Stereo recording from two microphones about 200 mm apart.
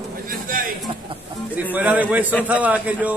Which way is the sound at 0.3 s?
45° right (ahead or behind).